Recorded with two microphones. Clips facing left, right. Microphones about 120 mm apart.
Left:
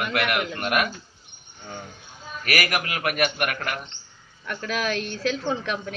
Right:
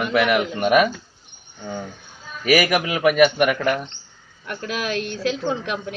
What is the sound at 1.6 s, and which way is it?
Speech, 90° right.